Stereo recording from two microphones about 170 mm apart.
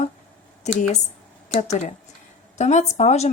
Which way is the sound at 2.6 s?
40° left (ahead or behind).